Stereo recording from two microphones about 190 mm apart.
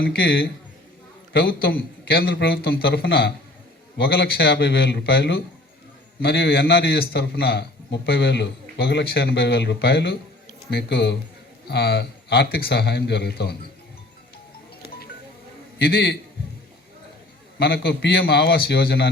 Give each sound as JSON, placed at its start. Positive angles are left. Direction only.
{"t": 0.0, "sound": "a man's voice", "side_deg": 55}
{"t": 15.8, "sound": "a man's voice", "side_deg": 55}
{"t": 17.6, "sound": "a man's voice", "side_deg": 55}